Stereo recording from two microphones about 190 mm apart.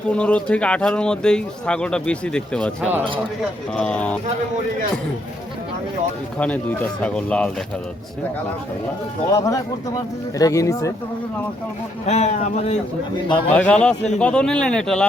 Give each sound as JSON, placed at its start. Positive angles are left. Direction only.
{"t": 0.1, "sound": "speech", "side_deg": 5}
{"t": 3.8, "sound": "speech", "side_deg": 5}
{"t": 6.4, "sound": "speech", "side_deg": 5}
{"t": 9.3, "sound": "speech", "side_deg": 15}
{"t": 12.0, "sound": "speech", "side_deg": 35}
{"t": 13.1, "sound": "a man's voice", "side_deg": 25}
{"t": 13.5, "sound": "speech", "side_deg": 5}